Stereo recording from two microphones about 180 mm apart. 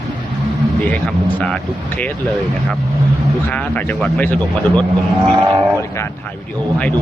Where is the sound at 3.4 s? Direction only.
10° left (ahead or behind).